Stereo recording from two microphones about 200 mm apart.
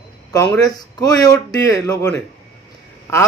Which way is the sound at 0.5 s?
20° left (ahead or behind).